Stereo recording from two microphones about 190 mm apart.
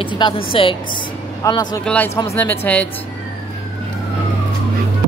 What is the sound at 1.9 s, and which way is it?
Speech, 10° left (ahead or behind).